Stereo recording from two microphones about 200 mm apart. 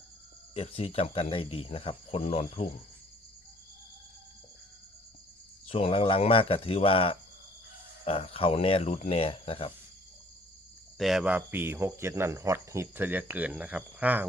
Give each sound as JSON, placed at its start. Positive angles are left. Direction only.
{"t": 0.5, "sound": "speech", "side_deg": 30}
{"t": 5.6, "sound": "speech", "side_deg": 30}
{"t": 10.9, "sound": "speech", "side_deg": 0}